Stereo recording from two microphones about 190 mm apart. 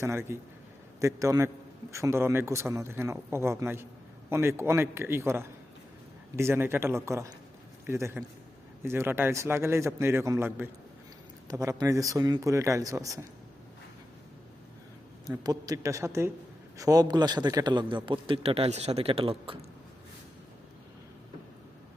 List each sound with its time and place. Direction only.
0.0 s speech: 15° right (ahead or behind)
15.4 s a man's voice: 20° right (ahead or behind)